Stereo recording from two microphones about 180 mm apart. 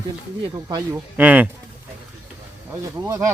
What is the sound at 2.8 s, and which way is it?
Speech, 15° right (ahead or behind).